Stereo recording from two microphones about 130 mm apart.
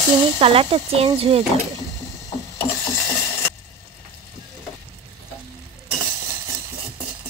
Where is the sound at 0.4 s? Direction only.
45° right (ahead or behind).